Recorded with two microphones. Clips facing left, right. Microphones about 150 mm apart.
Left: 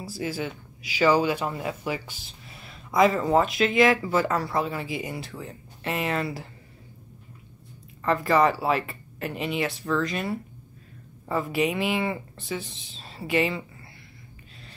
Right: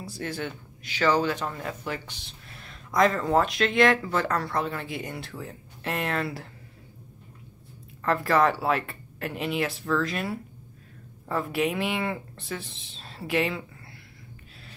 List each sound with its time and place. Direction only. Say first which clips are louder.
0.0 s speech: left 2 dB; 5° left (ahead or behind)
8.0 s speech: left 1 dB; centre (ahead or behind)